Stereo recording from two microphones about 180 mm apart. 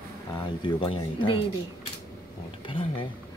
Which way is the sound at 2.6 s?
30° left (ahead or behind).